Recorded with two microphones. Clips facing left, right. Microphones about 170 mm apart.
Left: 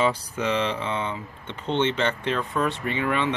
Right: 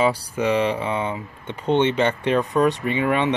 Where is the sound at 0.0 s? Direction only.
10° right (ahead or behind).